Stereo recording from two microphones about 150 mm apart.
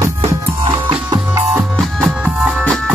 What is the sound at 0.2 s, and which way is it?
Music, 35° right (ahead or behind).